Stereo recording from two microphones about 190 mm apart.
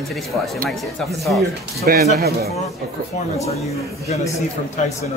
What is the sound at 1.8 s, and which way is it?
Speech, 55° right (ahead or behind).